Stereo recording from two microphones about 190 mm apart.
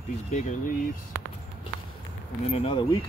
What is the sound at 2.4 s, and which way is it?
Speech, 30° left (ahead or behind).